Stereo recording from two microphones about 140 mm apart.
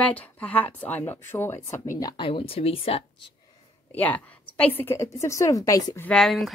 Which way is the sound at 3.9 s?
10° left (ahead or behind).